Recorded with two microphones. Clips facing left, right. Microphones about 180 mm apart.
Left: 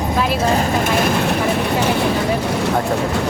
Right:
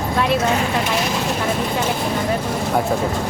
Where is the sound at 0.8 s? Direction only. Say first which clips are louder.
Left 4 dB; 55° left (ahead or behind).